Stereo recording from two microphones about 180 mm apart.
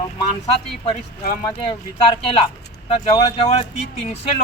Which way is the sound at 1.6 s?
30° left (ahead or behind).